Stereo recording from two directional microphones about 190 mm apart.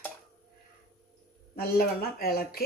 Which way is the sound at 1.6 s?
50° left (ahead or behind).